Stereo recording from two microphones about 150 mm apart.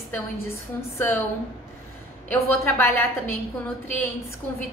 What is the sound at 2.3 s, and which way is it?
Speech, 15° left (ahead or behind).